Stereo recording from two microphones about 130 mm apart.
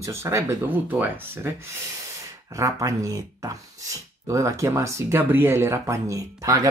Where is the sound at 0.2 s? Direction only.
20° right (ahead or behind).